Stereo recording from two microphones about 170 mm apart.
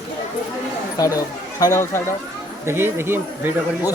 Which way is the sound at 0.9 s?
20° left (ahead or behind).